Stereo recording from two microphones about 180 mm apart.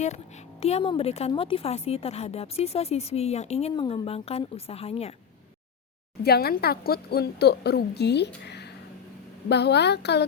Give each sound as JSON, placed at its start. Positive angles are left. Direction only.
{"t": 0.6, "sound": "speech", "side_deg": 30}
{"t": 6.2, "sound": "a woman's voice", "side_deg": 60}
{"t": 8.4, "sound": "a sound", "side_deg": 65}
{"t": 9.5, "sound": "speech", "side_deg": 70}